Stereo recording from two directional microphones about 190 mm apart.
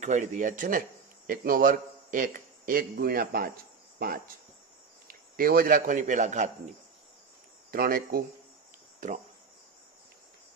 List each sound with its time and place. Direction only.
0.0 s speech: 40° right (ahead or behind)
5.0 s a man's voice: 50° right (ahead or behind)
7.7 s speech: 50° right (ahead or behind)
9.0 s cricket: 40° right (ahead or behind)